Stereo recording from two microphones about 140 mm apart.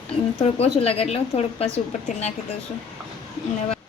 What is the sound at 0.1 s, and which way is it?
A woman's voice, 45° left (ahead or behind).